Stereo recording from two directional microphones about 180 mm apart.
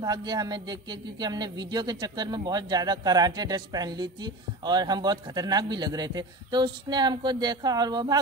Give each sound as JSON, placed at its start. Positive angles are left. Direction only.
{"t": 0.0, "sound": "a man's voice", "side_deg": -20}